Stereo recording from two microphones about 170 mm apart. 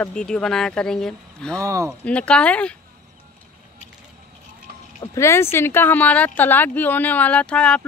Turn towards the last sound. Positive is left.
turn(degrees=5)  # may be behind; listen again after turning